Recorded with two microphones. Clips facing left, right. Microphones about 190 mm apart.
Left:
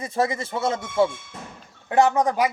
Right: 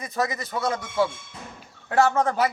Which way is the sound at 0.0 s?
30° left (ahead or behind).